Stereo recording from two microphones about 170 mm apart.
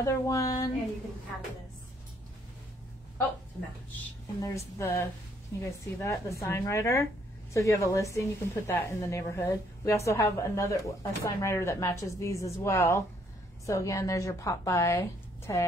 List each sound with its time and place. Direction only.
0.0 s speech: 20° left (ahead or behind)
4.0 s a woman's voice: 15° left (ahead or behind)